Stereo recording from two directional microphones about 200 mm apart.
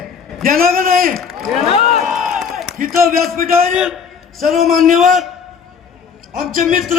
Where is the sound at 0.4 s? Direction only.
45° right (ahead or behind).